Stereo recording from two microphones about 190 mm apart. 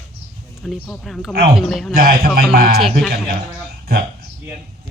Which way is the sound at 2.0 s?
50° right (ahead or behind).